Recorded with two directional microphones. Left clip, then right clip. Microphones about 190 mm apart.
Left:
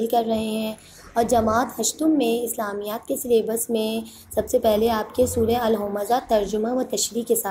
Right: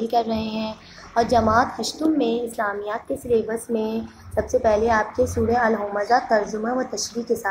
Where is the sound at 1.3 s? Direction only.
30° left (ahead or behind).